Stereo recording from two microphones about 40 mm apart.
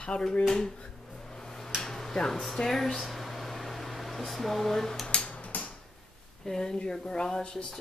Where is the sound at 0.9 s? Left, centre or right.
Centre.